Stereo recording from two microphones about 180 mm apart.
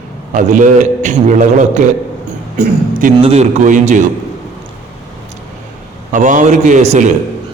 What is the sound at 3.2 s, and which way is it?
Speech, 35° right (ahead or behind).